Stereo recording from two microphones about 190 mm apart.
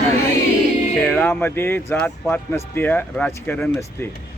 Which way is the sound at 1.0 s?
10° left (ahead or behind).